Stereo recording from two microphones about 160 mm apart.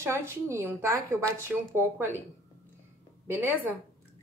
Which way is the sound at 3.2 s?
10° right (ahead or behind).